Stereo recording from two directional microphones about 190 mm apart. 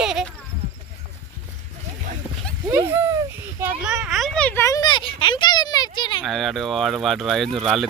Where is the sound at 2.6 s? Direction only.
15° right (ahead or behind); by 6.2 s 25° left (ahead or behind).